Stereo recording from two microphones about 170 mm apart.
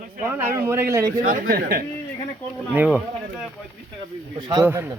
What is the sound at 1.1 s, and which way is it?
Speech, 55° right (ahead or behind).